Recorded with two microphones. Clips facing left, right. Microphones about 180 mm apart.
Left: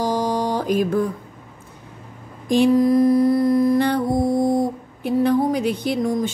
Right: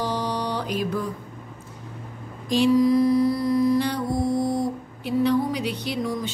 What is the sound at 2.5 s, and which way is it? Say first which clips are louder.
Mantra: left 3 dB; 50° left (ahead or behind).